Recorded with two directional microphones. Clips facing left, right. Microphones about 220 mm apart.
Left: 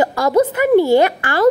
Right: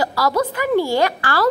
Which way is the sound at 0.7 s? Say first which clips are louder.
Left 6 dB; 20° left (ahead or behind).